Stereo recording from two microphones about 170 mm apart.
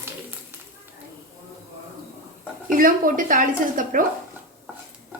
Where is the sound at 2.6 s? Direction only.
55° right (ahead or behind).